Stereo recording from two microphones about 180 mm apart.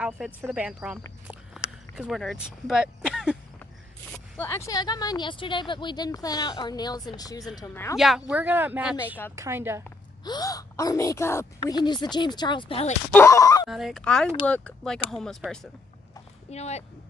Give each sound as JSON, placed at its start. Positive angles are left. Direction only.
{"t": 0.0, "sound": "speech", "side_deg": -5}
{"t": 2.0, "sound": "speech", "side_deg": 0}
{"t": 4.1, "sound": "speech", "side_deg": 15}
{"t": 7.9, "sound": "speech", "side_deg": 0}
{"t": 10.2, "sound": "speech", "side_deg": 20}
{"t": 13.1, "sound": "speech", "side_deg": 15}
{"t": 13.7, "sound": "speech", "side_deg": 0}
{"t": 16.4, "sound": "speech", "side_deg": 35}